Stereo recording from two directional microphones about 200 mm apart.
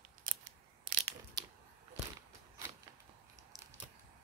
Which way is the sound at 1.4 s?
20° right (ahead or behind).